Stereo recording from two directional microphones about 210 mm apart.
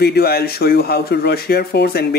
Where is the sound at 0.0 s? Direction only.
45° left (ahead or behind).